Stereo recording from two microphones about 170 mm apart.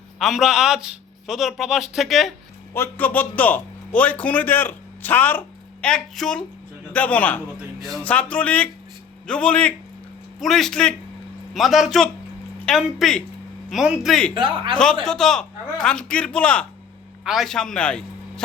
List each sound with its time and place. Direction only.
0.2 s a man's voice: centre (ahead or behind)
2.7 s a man's voice: 10° left (ahead or behind)
14.3 s speech: 30° right (ahead or behind)
15.0 s a man's voice: 5° left (ahead or behind)